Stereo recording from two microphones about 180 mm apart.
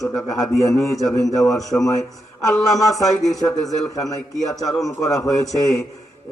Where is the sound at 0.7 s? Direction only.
20° left (ahead or behind).